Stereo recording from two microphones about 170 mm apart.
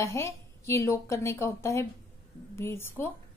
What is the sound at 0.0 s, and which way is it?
A woman's voice, 15° left (ahead or behind).